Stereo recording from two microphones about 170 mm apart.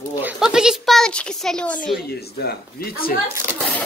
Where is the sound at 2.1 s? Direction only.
70° left (ahead or behind).